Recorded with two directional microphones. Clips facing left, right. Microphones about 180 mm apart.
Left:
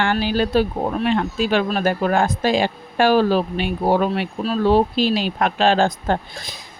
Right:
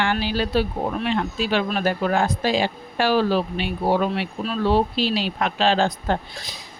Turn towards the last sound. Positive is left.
turn(degrees=50)  # may be behind; listen again after turning